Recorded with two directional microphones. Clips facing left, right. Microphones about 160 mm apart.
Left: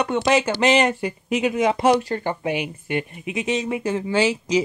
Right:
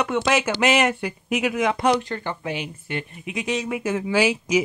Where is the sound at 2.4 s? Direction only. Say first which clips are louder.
Left 4 dB; 15° left (ahead or behind).